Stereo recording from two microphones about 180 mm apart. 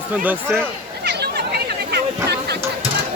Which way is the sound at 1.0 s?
70° right (ahead or behind).